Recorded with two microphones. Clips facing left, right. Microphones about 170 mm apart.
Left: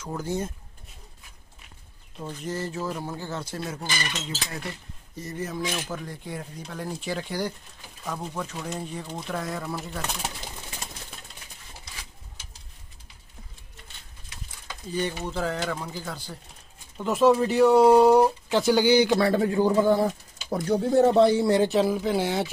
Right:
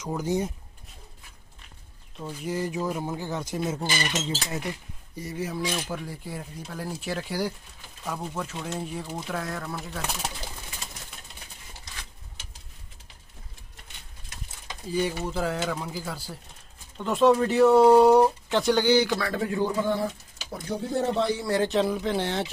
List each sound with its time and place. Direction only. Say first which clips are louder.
0.0 s speech: right 3 dB; 15° right (ahead or behind)
2.2 s speech: right 2 dB; 10° right (ahead or behind)
14.9 s speech: right 2 dB; 5° right (ahead or behind); by 19.0 s 10° left (ahead or behind)
19.0 s speech: left 6 dB; 30° left (ahead or behind)
20.4 s speech: left 7 dB; 60° left (ahead or behind)
21.2 s speech: left 7 dB; 25° left (ahead or behind)
21.5 s speech: left 2 dB; 5° left (ahead or behind)